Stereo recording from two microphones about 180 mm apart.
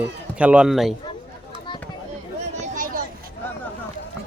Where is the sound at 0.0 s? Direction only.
5° right (ahead or behind).